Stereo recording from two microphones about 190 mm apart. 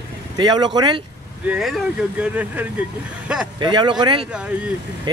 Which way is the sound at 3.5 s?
25° right (ahead or behind).